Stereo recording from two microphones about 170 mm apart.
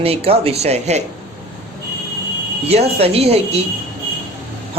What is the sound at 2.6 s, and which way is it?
Speech, 35° right (ahead or behind).